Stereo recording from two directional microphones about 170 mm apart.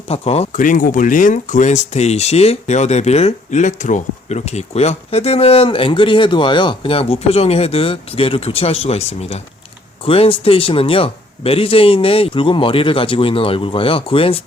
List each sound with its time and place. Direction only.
0.1 s speech: 35° left (ahead or behind)
0.5 s speech: 50° left (ahead or behind); by 14.4 s 35° left (ahead or behind)